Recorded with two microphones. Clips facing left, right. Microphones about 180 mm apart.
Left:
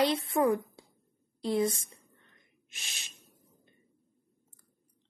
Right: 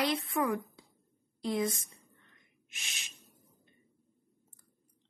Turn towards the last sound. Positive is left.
turn(degrees=35)  # may be behind; listen again after turning